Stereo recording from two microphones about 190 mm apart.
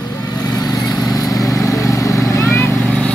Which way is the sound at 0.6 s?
20° left (ahead or behind).